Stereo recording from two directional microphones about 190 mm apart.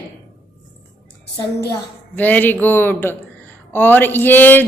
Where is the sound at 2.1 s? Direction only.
10° left (ahead or behind).